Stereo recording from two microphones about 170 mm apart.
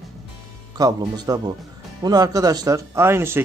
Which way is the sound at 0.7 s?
25° right (ahead or behind).